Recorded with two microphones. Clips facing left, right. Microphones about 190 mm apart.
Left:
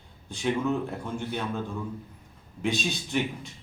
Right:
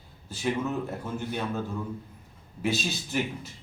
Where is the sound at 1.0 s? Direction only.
5° right (ahead or behind).